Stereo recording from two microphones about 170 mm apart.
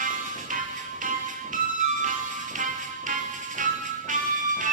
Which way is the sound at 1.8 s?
50° right (ahead or behind).